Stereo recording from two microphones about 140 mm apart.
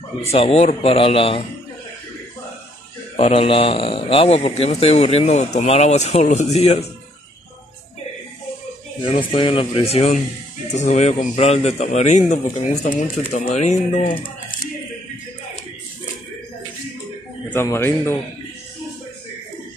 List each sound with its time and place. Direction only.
0.2 s a man's voice: 45° left (ahead or behind)
3.2 s a man's voice: 45° left (ahead or behind)
9.0 s a man's voice: 40° left (ahead or behind); by 14.3 s 75° left (ahead or behind)
17.5 s speech: 15° left (ahead or behind)